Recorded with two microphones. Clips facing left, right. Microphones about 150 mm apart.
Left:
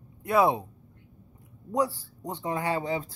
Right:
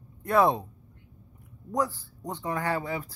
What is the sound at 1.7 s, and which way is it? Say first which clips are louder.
Speech: left 2 dB; 15° left (ahead or behind).